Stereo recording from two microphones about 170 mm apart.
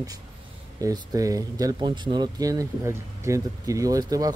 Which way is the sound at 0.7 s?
20° right (ahead or behind).